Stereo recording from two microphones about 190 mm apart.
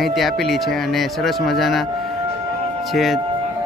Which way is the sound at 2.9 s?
Centre (ahead or behind).